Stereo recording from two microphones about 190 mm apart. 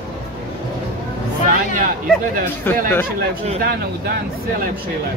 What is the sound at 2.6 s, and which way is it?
Speech, 10° left (ahead or behind).